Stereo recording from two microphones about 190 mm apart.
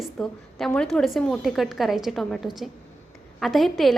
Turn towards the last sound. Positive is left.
turn(degrees=0)  # may be behind; listen again after turning